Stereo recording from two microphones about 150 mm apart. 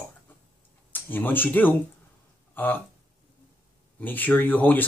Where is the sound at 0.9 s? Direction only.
10° left (ahead or behind).